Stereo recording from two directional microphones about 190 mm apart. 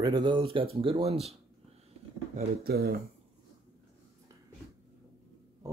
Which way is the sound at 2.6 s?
55° right (ahead or behind).